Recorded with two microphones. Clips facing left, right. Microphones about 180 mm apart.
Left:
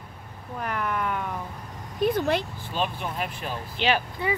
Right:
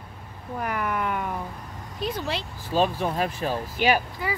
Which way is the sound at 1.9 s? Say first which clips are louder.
Left 6 dB; 55° left (ahead or behind).